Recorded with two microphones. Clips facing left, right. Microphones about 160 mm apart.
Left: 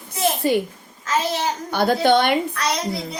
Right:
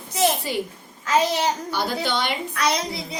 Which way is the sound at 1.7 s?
55° left (ahead or behind).